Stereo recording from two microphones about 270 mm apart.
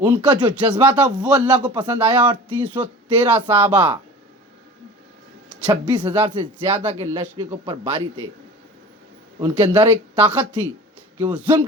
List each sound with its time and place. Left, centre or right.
0.0 s speech: centre
0.8 s speech: centre
1.7 s speech: centre
5.6 s speech: centre
9.4 s speech: centre